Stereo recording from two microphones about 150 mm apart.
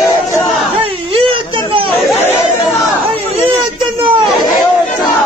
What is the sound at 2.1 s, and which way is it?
Chatter, 15° left (ahead or behind).